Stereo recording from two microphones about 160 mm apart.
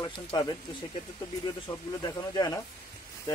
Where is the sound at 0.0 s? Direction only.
25° left (ahead or behind).